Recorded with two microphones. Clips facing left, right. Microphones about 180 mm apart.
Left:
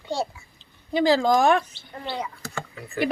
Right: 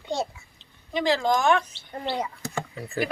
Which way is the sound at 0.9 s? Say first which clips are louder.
Left 4 dB; 35° left (ahead or behind).